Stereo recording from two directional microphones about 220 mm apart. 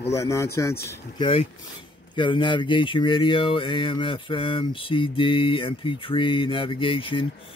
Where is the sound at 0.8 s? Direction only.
20° left (ahead or behind).